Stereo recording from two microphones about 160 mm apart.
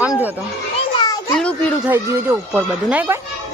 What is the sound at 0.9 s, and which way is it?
Children playing, 25° left (ahead or behind).